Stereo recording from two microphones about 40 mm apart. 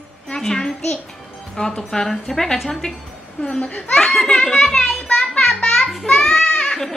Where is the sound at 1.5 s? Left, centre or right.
Centre.